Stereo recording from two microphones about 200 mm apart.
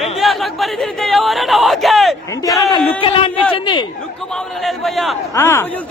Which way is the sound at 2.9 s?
25° left (ahead or behind).